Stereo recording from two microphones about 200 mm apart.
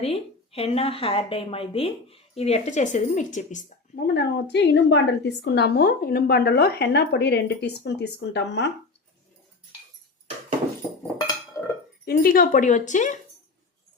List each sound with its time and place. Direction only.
0.0 s a woman's voice: 30° left (ahead or behind); by 8.7 s 60° left (ahead or behind)
11.6 s cutlery: 20° left (ahead or behind)
12.0 s speech: 45° left (ahead or behind)